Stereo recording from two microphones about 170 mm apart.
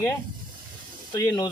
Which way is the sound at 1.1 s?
20° left (ahead or behind).